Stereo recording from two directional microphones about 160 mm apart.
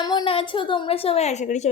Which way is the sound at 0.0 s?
25° left (ahead or behind).